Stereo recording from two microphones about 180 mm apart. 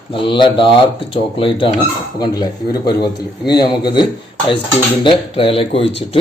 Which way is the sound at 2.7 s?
25° left (ahead or behind).